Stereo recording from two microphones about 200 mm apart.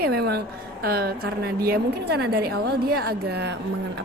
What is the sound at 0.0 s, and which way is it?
A woman's voice, 50° right (ahead or behind).